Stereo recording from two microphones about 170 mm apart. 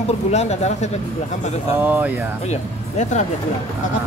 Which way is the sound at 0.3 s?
40° left (ahead or behind).